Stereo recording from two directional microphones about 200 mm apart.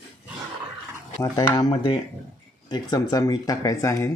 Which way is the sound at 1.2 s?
20° left (ahead or behind).